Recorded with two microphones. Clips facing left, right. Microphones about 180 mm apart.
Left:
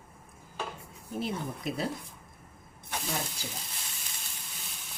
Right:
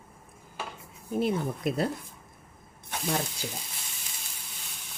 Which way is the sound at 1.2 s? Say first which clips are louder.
Right 6 dB; 55° right (ahead or behind).